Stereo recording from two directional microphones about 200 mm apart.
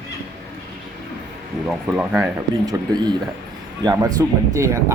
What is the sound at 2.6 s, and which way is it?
Speech, 20° right (ahead or behind).